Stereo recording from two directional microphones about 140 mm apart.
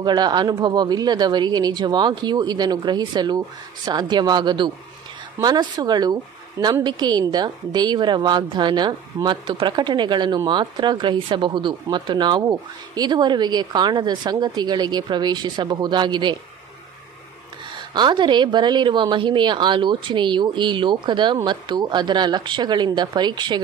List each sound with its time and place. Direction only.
0.0 s a woman's voice: 30° right (ahead or behind)
17.7 s a woman's voice: 35° right (ahead or behind)